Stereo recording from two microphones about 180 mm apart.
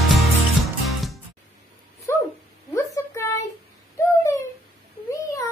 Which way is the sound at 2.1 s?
15° left (ahead or behind).